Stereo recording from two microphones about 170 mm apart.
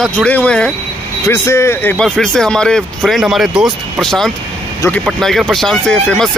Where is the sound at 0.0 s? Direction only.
10° left (ahead or behind).